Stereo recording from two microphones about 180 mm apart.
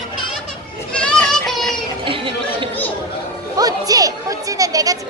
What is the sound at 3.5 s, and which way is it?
Music, 20° right (ahead or behind).